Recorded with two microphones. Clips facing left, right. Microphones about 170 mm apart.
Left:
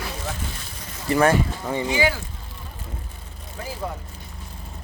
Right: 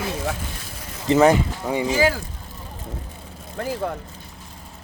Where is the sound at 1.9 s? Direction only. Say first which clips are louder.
Right 3 dB; 45° right (ahead or behind).